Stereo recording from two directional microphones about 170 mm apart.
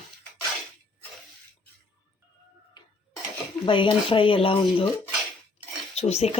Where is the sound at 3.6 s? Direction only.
30° left (ahead or behind).